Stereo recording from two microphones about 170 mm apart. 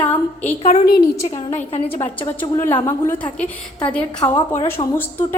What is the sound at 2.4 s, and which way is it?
A woman's voice, 15° left (ahead or behind).